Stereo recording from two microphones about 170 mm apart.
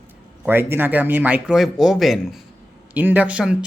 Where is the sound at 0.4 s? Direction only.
10° right (ahead or behind).